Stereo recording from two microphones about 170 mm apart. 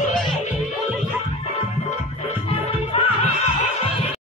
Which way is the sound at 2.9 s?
35° left (ahead or behind).